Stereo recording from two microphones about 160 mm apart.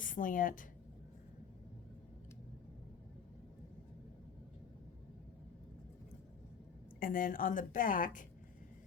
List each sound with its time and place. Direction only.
0.0 s a woman's voice: 55° left (ahead or behind)
7.0 s a woman's voice: 60° left (ahead or behind)